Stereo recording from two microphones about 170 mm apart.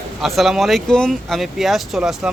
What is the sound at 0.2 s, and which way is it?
Speech, centre (ahead or behind).